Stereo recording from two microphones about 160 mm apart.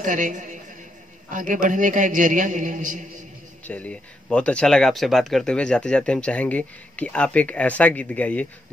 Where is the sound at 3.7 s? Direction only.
10° left (ahead or behind).